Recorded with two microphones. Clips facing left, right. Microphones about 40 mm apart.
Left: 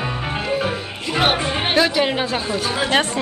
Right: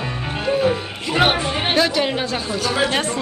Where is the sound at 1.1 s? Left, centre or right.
Centre.